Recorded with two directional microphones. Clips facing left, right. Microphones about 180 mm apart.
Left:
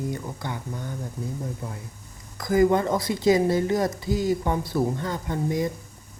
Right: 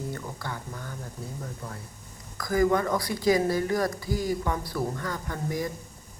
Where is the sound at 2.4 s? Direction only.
25° left (ahead or behind).